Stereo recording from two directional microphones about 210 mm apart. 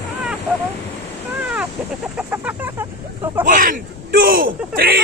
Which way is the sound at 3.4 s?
40° right (ahead or behind).